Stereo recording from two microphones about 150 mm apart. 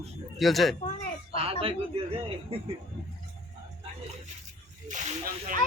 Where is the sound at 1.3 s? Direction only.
40° right (ahead or behind).